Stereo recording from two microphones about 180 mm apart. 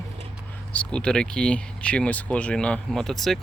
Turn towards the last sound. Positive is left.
turn(degrees=0)  # may be behind; listen again after turning